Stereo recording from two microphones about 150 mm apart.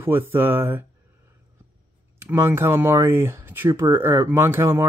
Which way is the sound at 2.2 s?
15° right (ahead or behind).